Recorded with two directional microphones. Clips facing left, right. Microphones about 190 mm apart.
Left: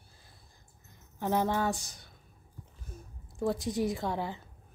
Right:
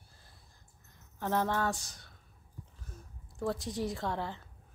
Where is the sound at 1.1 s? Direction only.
15° left (ahead or behind).